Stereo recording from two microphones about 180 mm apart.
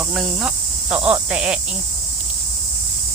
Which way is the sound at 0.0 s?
5° right (ahead or behind).